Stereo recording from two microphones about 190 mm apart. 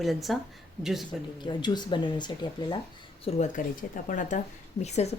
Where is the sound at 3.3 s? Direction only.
35° left (ahead or behind).